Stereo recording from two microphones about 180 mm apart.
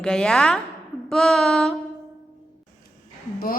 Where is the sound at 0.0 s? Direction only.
5° left (ahead or behind).